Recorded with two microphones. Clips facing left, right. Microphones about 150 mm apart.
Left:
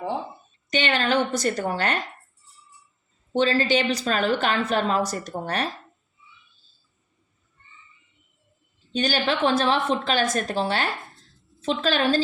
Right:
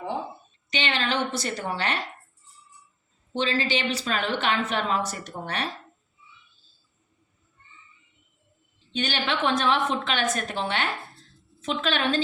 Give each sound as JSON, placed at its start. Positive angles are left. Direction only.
{"t": 0.7, "sound": "a woman's voice", "side_deg": 45}
{"t": 3.3, "sound": "a woman's voice", "side_deg": 40}
{"t": 8.9, "sound": "a woman's voice", "side_deg": 40}